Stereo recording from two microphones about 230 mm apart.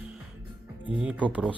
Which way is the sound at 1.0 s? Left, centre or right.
Centre.